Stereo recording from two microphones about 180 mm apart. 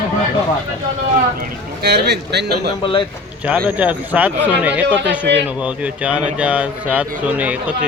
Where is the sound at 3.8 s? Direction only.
10° right (ahead or behind).